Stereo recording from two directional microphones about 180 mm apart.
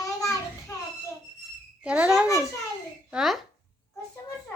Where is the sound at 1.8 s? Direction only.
5° right (ahead or behind).